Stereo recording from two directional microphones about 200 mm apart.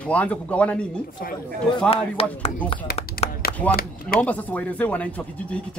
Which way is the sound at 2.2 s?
30° left (ahead or behind).